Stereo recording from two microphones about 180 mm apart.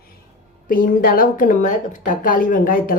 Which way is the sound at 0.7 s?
50° left (ahead or behind).